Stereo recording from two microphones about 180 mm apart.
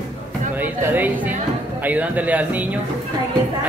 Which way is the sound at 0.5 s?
10° right (ahead or behind).